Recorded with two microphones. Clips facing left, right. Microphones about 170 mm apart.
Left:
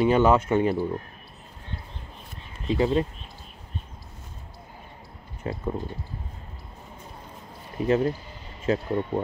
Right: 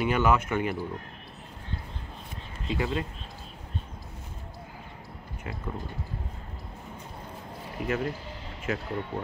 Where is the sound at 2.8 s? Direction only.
25° left (ahead or behind).